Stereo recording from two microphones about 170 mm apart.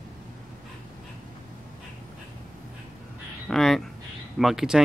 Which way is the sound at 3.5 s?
Centre (ahead or behind).